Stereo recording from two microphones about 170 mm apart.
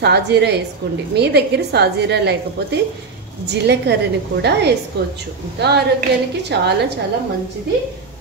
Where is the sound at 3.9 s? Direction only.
75° right (ahead or behind).